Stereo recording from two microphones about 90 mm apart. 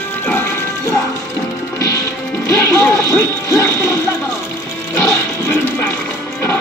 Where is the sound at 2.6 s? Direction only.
20° left (ahead or behind).